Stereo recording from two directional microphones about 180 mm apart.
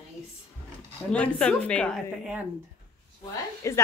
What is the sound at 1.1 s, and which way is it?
Speech, 5° left (ahead or behind).